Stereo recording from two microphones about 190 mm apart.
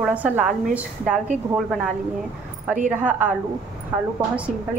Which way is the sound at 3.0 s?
10° right (ahead or behind).